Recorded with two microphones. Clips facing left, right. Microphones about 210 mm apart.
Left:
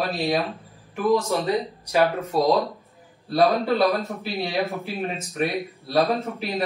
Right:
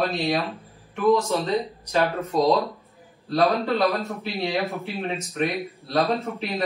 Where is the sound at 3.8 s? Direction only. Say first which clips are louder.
Left 1 dB; centre (ahead or behind).